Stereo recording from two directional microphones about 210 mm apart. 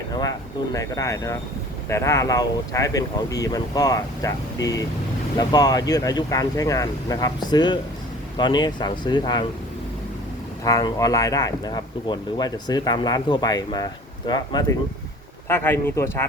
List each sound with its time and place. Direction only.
0.1 s speech: 15° left (ahead or behind)
10.6 s speech: 15° left (ahead or behind)